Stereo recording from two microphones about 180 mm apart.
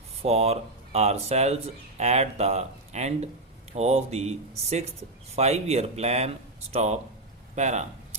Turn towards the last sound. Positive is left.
turn(degrees=-40)  # may be behind; listen again after turning